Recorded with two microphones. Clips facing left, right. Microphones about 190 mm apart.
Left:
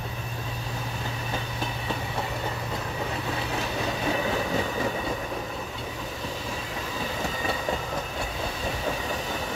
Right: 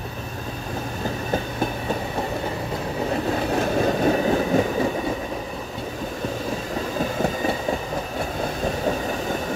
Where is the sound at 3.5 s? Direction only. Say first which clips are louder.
Right 11 dB; 50° right (ahead or behind).